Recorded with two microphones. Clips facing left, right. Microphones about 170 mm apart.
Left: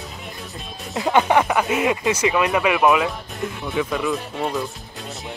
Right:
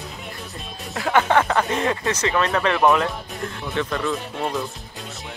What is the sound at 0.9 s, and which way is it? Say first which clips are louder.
Speech: left 1 dB; 20° left (ahead or behind).